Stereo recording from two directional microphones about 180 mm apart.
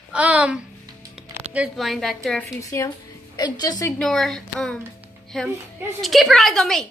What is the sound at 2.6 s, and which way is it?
A woman's voice, 15° left (ahead or behind).